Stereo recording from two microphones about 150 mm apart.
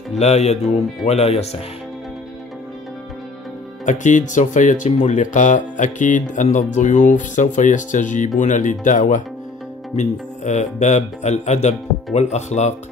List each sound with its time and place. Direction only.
0.2 s speech: 45° left (ahead or behind)
3.8 s speech: 55° left (ahead or behind)